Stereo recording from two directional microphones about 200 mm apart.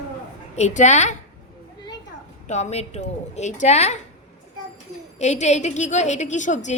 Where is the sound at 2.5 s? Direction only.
35° left (ahead or behind).